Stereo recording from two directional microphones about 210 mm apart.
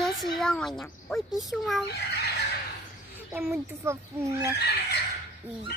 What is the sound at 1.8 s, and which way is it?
Fowl, 50° left (ahead or behind).